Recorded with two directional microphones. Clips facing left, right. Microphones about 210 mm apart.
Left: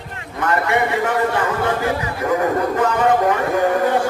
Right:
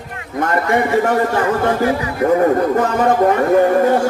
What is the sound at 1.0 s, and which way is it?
Speech, 40° right (ahead or behind).